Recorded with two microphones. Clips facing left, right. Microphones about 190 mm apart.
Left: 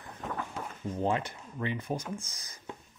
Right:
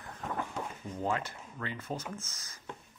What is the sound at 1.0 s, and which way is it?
Speech, 20° left (ahead or behind).